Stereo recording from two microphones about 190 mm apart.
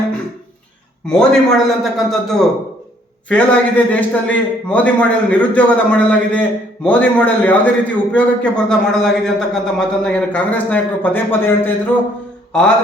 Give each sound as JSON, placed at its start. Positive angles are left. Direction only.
{"t": 1.0, "sound": "a man's voice", "side_deg": 5}